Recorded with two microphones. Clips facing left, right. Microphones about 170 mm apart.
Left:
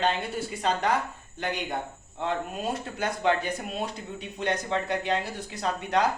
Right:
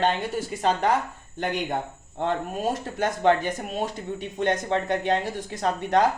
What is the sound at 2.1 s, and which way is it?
Speech, 55° right (ahead or behind).